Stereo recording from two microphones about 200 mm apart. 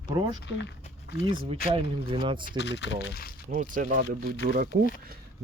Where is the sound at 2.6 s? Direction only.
60° left (ahead or behind).